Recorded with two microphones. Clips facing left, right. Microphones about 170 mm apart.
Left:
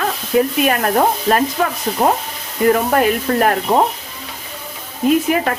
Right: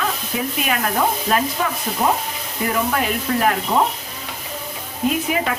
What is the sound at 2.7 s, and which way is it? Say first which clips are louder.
Speech: left 4 dB; 50° left (ahead or behind).